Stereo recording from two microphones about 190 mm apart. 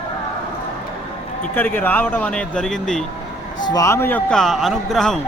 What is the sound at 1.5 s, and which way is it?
Speech, 10° left (ahead or behind).